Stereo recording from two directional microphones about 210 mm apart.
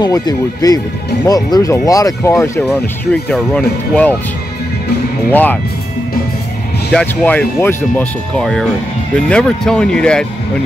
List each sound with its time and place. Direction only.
0.0 s speech: 20° left (ahead or behind)
5.3 s speech: 10° left (ahead or behind)
6.9 s speech: 5° left (ahead or behind)